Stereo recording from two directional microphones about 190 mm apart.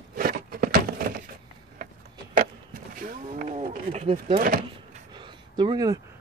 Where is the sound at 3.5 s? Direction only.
35° right (ahead or behind).